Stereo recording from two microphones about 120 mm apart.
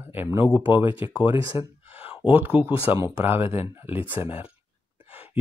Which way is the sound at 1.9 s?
50° left (ahead or behind).